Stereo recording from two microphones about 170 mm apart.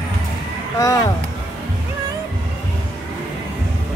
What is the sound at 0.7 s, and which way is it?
Speech, 20° left (ahead or behind).